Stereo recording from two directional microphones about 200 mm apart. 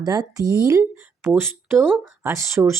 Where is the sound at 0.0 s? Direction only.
20° right (ahead or behind).